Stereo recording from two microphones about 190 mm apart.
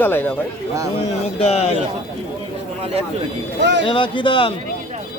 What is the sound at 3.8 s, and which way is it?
Speech, 25° left (ahead or behind).